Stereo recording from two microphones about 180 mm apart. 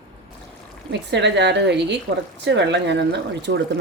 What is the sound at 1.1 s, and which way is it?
Speech, 75° right (ahead or behind).